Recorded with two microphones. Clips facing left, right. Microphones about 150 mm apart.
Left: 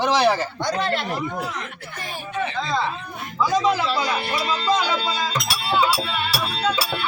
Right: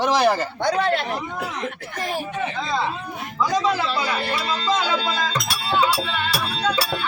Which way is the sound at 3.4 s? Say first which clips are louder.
Left 1 dB; 10° left (ahead or behind).